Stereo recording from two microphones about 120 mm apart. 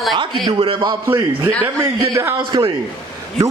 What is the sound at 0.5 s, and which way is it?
Speech, 40° right (ahead or behind).